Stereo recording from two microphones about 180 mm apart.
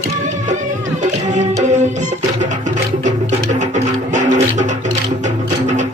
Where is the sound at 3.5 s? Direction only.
45° right (ahead or behind).